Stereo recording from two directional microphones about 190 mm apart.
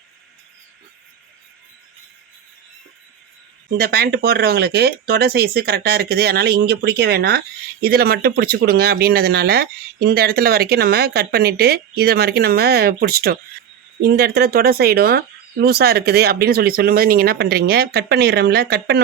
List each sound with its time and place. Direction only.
3.8 s speech: 55° right (ahead or behind)